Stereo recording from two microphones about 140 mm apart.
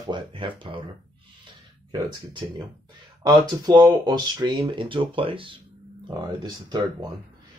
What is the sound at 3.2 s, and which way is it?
Speech, 30° right (ahead or behind).